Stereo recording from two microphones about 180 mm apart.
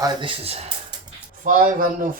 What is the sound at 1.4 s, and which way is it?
Speech, 50° right (ahead or behind).